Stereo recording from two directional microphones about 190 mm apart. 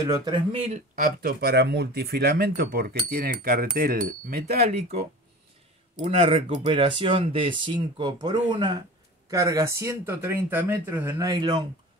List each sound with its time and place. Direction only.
0.0 s speech: 20° right (ahead or behind)
0.9 s speech: 50° right (ahead or behind)
6.0 s speech: 30° right (ahead or behind)